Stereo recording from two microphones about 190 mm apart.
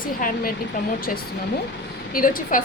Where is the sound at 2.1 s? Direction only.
45° left (ahead or behind).